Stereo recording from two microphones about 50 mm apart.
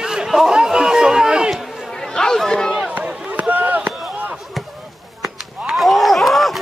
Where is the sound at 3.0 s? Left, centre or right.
Right.